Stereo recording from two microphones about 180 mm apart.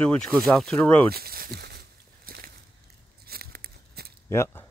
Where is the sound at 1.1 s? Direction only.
60° right (ahead or behind).